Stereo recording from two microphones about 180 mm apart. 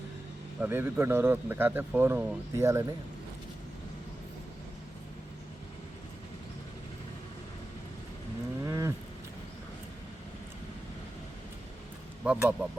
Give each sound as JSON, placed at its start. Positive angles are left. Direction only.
{"t": 0.6, "sound": "a man's voice", "side_deg": -10}
{"t": 8.6, "sound": "cattle", "side_deg": -15}
{"t": 12.2, "sound": "a man's voice", "side_deg": -5}